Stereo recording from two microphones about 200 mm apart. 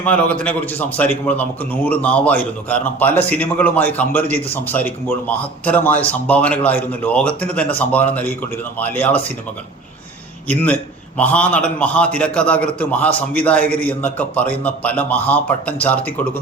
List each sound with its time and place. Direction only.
0.0 s a man's voice: 5° left (ahead or behind)
10.5 s a man's voice: 5° left (ahead or behind)